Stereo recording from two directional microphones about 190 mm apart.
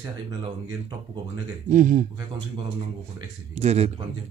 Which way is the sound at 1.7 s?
40° right (ahead or behind).